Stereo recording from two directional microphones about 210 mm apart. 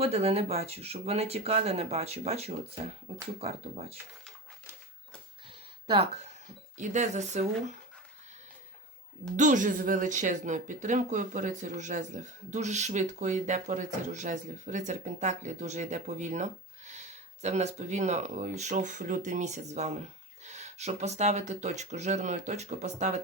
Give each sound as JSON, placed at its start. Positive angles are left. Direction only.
{"t": 0.0, "sound": "speech", "side_deg": -30}
{"t": 5.5, "sound": "a sound", "side_deg": -25}
{"t": 6.7, "sound": "speech", "side_deg": -35}
{"t": 9.3, "sound": "speech", "side_deg": -35}